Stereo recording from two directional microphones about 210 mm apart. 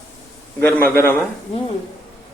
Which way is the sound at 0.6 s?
10° left (ahead or behind).